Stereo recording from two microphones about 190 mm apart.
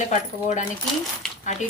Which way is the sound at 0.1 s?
40° left (ahead or behind).